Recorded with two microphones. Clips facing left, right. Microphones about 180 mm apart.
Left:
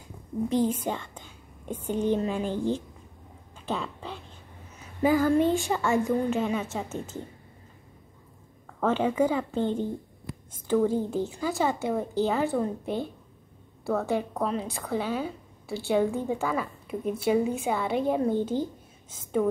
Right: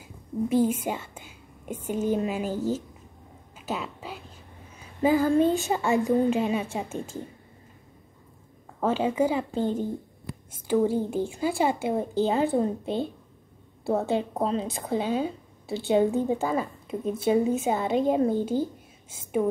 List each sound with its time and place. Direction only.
0.5 s a woman's voice: 10° right (ahead or behind)
3.5 s a sound: 5° right (ahead or behind)
5.0 s a woman's voice: 20° right (ahead or behind)
8.7 s a sound: 10° right (ahead or behind)
9.3 s a woman's voice: 25° right (ahead or behind)
9.6 s a woman's voice: 10° right (ahead or behind)
10.9 s a woman's voice: 15° right (ahead or behind)
16.3 s a woman's voice: 35° right (ahead or behind); by 19.5 s 10° right (ahead or behind)